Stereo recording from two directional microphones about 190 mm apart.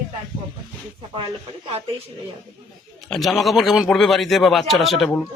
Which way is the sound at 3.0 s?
Centre (ahead or behind).